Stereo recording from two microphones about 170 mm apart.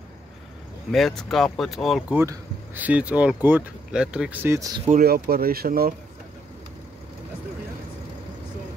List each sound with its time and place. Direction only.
0.9 s speech: centre (ahead or behind)
2.1 s speech: 10° right (ahead or behind)
4.8 s speech: 60° right (ahead or behind)